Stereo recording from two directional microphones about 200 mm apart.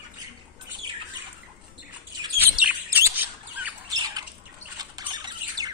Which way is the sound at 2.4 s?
10° right (ahead or behind).